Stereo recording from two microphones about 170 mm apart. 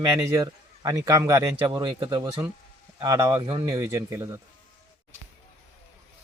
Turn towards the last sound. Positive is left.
turn(degrees=-20)  # may be behind; listen again after turning